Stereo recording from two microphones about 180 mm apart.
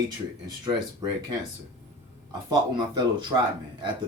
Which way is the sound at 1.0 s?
20° right (ahead or behind).